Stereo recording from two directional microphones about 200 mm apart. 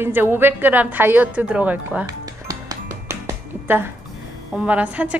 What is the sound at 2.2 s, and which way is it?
Music, 15° right (ahead or behind).